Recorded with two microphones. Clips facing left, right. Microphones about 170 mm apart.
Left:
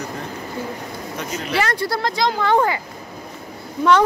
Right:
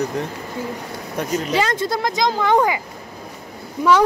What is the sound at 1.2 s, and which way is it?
Speech, 55° right (ahead or behind).